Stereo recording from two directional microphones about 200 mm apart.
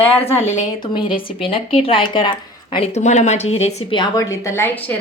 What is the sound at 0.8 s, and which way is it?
A woman's voice, 25° left (ahead or behind).